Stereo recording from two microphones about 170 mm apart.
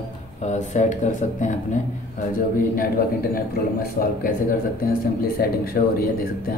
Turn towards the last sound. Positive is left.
turn(degrees=60)  # may be behind; listen again after turning